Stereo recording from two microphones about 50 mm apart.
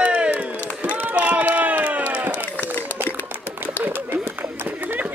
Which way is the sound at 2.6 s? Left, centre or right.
Left.